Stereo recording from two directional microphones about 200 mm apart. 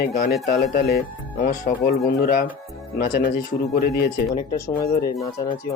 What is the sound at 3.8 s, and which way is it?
Speech, 50° left (ahead or behind).